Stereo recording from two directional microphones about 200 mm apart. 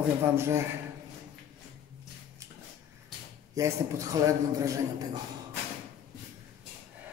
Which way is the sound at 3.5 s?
15° right (ahead or behind).